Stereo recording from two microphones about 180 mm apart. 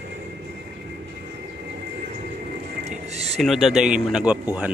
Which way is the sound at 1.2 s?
65° right (ahead or behind).